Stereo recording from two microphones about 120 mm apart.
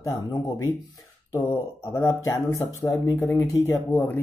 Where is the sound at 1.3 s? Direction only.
20° left (ahead or behind).